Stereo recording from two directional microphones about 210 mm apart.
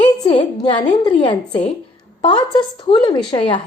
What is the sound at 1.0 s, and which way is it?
Speech, 20° left (ahead or behind).